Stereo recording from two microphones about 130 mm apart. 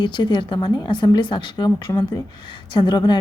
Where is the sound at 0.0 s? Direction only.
35° left (ahead or behind).